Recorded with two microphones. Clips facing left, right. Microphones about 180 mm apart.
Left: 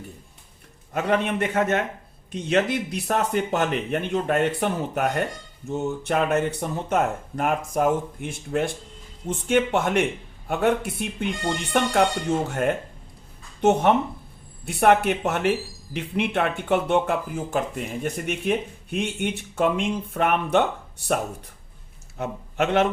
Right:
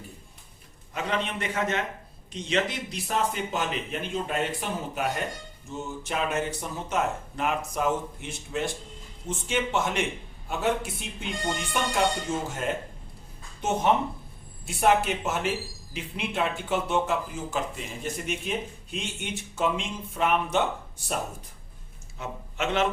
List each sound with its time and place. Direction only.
0.9 s a man's voice: 50° left (ahead or behind)
22.2 s a man's voice: 55° left (ahead or behind)